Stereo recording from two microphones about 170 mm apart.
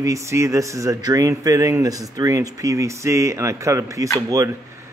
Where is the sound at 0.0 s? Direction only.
15° right (ahead or behind).